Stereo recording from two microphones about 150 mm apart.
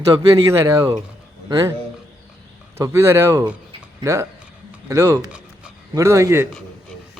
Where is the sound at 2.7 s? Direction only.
20° right (ahead or behind).